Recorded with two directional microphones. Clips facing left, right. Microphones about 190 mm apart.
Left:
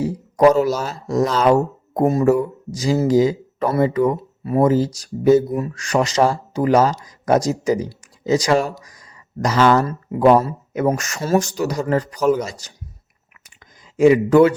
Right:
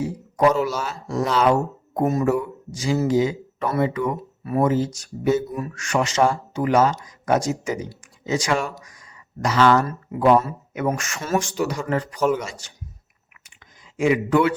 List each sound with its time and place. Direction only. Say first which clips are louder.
0.0 s speech: left 5 dB; 40° left (ahead or behind)
13.9 s speech: left 7 dB; 40° left (ahead or behind)